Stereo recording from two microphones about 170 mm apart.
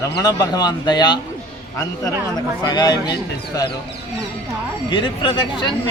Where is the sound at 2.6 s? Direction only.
25° left (ahead or behind).